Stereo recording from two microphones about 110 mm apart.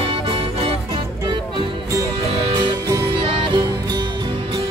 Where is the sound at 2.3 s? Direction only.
55° right (ahead or behind).